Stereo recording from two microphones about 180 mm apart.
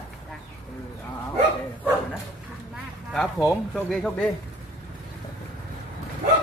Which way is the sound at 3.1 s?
Centre (ahead or behind).